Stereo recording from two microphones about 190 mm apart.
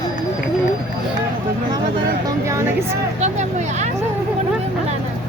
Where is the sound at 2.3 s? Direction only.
15° right (ahead or behind).